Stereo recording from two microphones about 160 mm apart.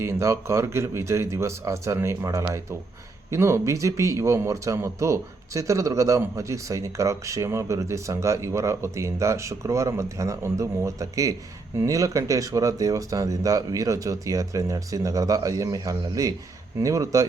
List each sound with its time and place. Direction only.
0.0 s a man's voice: 15° right (ahead or behind)